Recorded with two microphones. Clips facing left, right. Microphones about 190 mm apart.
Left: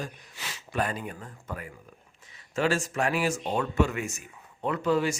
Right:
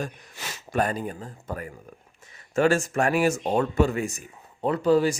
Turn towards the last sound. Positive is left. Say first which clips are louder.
# right 5 dB
turn(degrees=-35)  # may be behind; listen again after turning